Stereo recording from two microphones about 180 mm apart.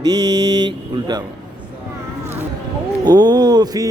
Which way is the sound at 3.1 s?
20° right (ahead or behind).